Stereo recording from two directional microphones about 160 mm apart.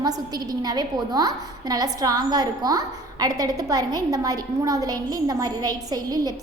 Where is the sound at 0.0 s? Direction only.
25° right (ahead or behind).